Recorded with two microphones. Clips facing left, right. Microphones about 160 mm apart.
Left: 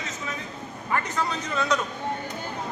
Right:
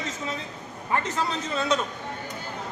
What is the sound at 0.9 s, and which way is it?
Speech, 25° right (ahead or behind).